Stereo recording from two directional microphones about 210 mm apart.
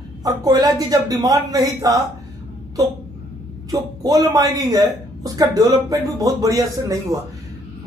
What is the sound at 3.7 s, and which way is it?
A man's voice, 15° right (ahead or behind).